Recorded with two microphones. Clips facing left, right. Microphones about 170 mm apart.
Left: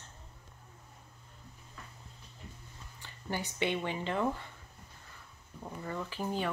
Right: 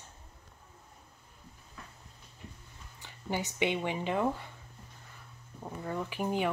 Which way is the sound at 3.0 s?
15° right (ahead or behind).